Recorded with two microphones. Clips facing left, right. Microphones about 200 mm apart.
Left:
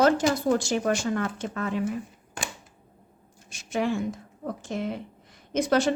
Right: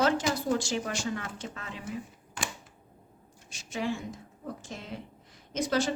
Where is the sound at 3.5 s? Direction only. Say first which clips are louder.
Left 6 dB; 55° left (ahead or behind).